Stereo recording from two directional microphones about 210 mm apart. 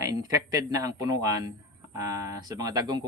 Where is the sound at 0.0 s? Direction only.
15° right (ahead or behind).